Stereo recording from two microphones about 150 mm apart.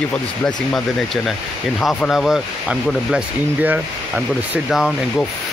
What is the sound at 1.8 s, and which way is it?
Speech, centre (ahead or behind).